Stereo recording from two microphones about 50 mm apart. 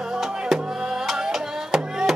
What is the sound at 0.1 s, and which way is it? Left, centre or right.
Music, centre.